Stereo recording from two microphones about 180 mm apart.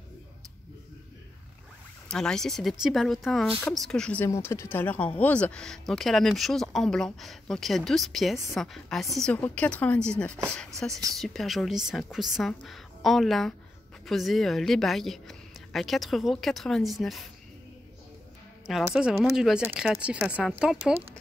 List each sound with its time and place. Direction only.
2.0 s speech: 5° left (ahead or behind)
10.9 s a woman's voice: 20° right (ahead or behind)
11.1 s speech: centre (ahead or behind)
18.9 s speech: 5° right (ahead or behind)